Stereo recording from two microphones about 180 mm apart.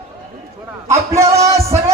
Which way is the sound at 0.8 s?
15° right (ahead or behind).